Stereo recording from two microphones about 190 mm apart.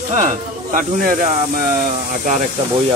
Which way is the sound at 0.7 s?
45° right (ahead or behind).